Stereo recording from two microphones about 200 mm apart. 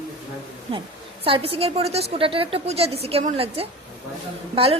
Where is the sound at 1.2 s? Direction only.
30° right (ahead or behind).